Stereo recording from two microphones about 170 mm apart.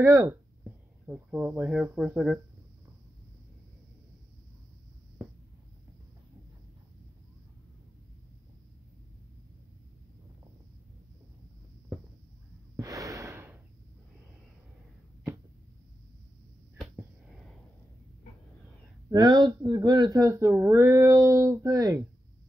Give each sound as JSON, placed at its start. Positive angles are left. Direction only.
{"t": 0.0, "sound": "speech", "side_deg": -15}
{"t": 12.7, "sound": "gasp", "side_deg": -20}
{"t": 19.0, "sound": "speech", "side_deg": -25}